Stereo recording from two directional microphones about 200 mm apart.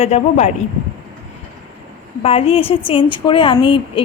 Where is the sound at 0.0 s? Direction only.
35° left (ahead or behind).